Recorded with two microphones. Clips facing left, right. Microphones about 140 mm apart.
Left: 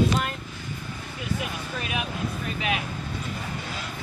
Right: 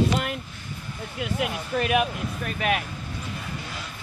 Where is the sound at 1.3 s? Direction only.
55° right (ahead or behind).